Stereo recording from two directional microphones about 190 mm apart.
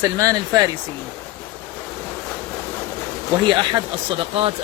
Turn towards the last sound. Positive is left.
turn(degrees=-30)  # may be behind; listen again after turning